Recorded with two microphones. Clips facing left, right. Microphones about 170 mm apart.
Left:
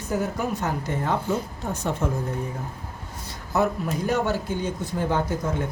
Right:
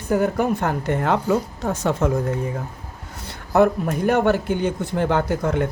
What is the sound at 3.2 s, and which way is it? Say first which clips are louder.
Speech: right 7 dB; 60° right (ahead or behind).